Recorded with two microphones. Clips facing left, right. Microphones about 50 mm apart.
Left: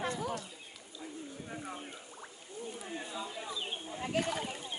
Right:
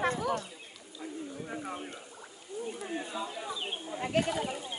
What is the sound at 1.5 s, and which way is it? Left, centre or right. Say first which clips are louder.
Speech: right 3 dB; centre.